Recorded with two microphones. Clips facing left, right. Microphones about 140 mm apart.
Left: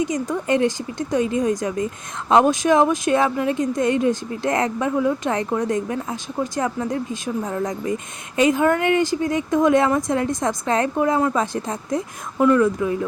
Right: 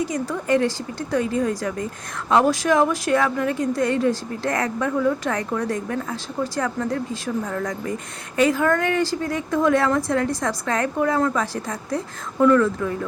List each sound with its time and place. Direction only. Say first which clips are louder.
0.0 s speech: left 2 dB; 20° left (ahead or behind)